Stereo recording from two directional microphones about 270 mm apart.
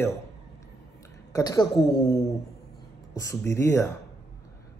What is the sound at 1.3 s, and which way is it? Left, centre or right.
Speech, centre.